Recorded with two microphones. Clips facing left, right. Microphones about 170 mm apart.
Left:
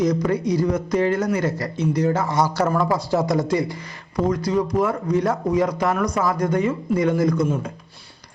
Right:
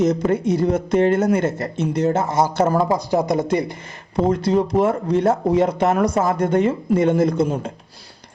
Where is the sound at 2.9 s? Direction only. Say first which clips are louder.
Right 1 dB; 20° right (ahead or behind).